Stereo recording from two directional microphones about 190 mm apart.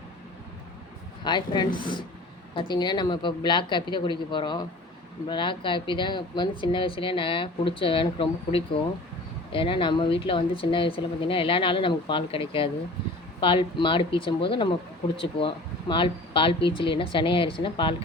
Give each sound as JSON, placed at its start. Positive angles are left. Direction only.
{"t": 1.2, "sound": "speech", "side_deg": 25}